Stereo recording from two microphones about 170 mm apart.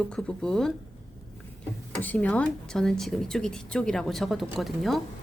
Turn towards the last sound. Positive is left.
turn(degrees=0)  # may be behind; listen again after turning